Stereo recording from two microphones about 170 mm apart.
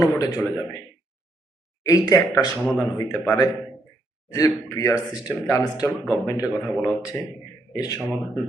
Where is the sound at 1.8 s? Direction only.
20° left (ahead or behind).